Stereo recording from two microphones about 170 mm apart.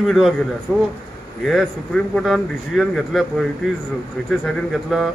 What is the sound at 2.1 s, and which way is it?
Speech, centre (ahead or behind).